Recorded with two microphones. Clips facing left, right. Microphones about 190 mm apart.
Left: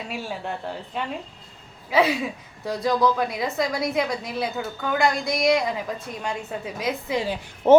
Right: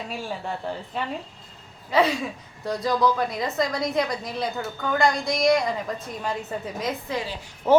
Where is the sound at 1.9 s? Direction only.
5° left (ahead or behind).